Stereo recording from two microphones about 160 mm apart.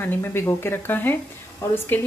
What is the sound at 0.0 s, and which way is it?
A woman's voice, 15° left (ahead or behind).